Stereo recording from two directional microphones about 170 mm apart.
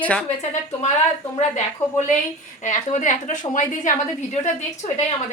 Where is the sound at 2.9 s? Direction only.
45° left (ahead or behind).